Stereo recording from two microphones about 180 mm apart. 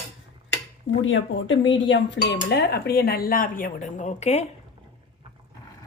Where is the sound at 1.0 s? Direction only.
90° left.